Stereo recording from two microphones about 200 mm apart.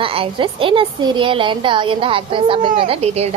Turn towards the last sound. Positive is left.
turn(degrees=-30)  # may be behind; listen again after turning